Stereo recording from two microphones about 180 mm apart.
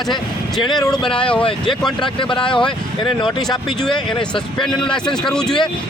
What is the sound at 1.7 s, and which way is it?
Speech, centre (ahead or behind).